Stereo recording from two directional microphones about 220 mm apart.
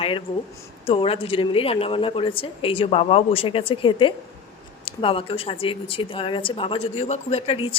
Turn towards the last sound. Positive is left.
turn(degrees=25)  # may be behind; listen again after turning